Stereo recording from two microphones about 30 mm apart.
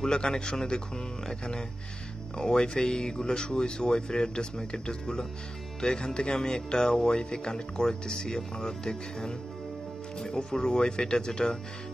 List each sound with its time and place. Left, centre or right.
0.1 s speech: left
2.3 s speech: left